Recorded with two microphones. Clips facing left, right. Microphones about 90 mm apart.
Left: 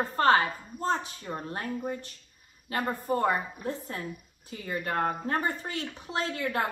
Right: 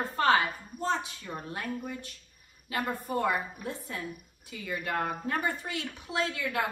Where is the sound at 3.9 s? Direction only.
40° left (ahead or behind).